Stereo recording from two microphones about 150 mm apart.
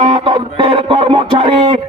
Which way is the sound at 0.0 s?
40° right (ahead or behind).